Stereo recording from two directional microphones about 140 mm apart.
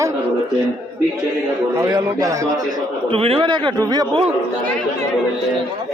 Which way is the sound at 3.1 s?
45° right (ahead or behind).